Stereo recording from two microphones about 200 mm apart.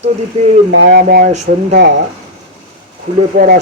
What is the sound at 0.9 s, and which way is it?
Speech, 45° right (ahead or behind).